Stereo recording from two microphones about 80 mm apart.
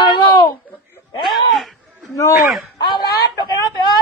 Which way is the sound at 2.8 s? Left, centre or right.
Left.